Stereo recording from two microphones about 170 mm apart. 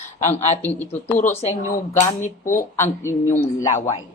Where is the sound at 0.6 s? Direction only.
10° left (ahead or behind).